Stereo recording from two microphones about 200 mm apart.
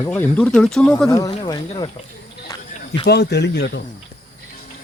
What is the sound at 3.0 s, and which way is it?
Speech, 55° left (ahead or behind).